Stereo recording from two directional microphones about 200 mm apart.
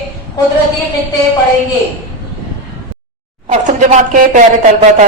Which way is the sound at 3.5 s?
35° right (ahead or behind).